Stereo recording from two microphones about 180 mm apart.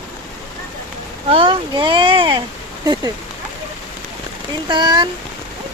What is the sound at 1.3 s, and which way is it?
Speech, 30° right (ahead or behind).